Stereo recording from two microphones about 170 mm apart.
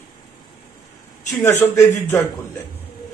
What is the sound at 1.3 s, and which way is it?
Speech, 15° left (ahead or behind).